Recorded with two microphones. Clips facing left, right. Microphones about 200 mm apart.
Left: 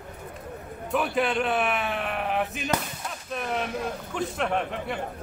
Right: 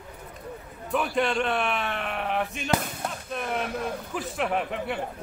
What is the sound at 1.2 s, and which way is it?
Speech, centre (ahead or behind).